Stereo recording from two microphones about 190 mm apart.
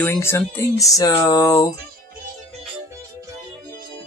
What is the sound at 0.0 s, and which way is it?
Speech, 15° left (ahead or behind).